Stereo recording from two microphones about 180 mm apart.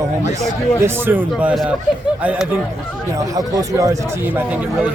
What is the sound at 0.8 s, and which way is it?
A man's voice, 10° right (ahead or behind).